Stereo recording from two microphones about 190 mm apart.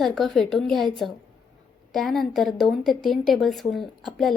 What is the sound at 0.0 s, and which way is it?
Speech, centre (ahead or behind).